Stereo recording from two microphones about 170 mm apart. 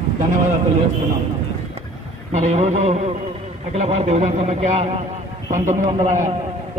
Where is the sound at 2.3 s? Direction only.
40° right (ahead or behind).